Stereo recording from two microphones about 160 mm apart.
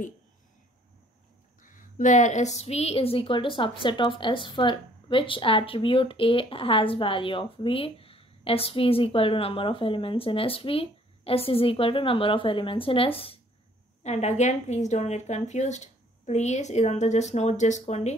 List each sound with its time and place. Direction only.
1.6 s a woman's voice: 55° left (ahead or behind); by 13.4 s 35° left (ahead or behind)
14.0 s a woman's voice: 45° left (ahead or behind)